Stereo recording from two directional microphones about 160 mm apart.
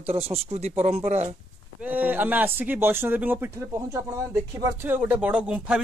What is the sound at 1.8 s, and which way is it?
Speech, 10° right (ahead or behind).